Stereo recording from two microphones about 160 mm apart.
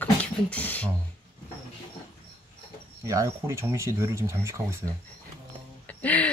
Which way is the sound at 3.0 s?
20° right (ahead or behind).